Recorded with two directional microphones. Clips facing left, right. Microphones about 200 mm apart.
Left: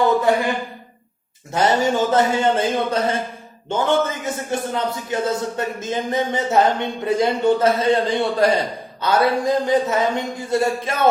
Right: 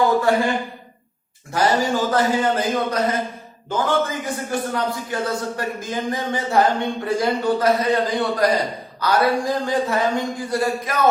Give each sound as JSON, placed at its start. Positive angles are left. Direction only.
{"t": 0.3, "sound": "a man's voice", "side_deg": 20}
{"t": 1.5, "sound": "a man's voice", "side_deg": 25}